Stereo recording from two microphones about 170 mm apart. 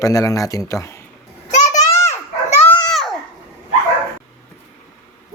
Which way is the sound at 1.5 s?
45° left (ahead or behind).